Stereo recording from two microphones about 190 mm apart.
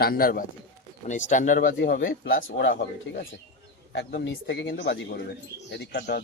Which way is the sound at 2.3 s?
75° left (ahead or behind).